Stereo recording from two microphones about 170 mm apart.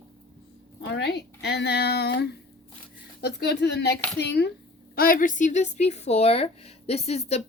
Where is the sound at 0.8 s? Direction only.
85° left.